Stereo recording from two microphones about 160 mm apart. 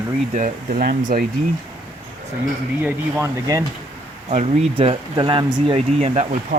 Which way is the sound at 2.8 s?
20° right (ahead or behind).